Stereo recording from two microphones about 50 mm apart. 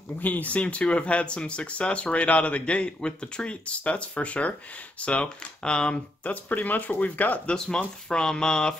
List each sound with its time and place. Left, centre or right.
0.2 s speech: left
6.3 s speech: left
7.4 s speech: centre